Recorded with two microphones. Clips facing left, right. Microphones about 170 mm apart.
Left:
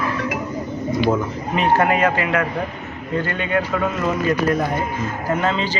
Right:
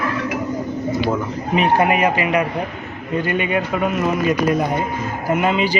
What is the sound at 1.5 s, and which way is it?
Speech, 15° right (ahead or behind).